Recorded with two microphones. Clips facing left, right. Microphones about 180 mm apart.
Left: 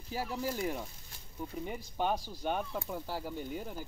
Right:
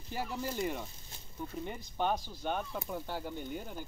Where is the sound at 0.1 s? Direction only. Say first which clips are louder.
Left 1 dB; 5° left (ahead or behind).